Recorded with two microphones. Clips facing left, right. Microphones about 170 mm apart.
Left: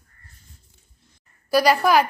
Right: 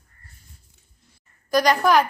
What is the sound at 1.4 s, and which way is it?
Speech, 5° left (ahead or behind).